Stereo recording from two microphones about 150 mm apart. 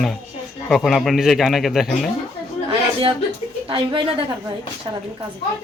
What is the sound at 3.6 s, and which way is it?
Speech, 35° right (ahead or behind).